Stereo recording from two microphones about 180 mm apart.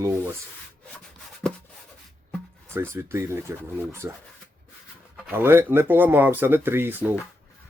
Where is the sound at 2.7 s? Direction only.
15° right (ahead or behind).